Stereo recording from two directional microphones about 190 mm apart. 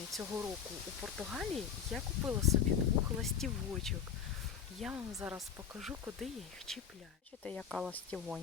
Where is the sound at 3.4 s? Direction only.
Centre (ahead or behind).